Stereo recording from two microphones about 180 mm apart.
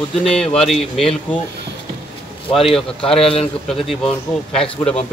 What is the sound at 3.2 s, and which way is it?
Speech, 30° left (ahead or behind).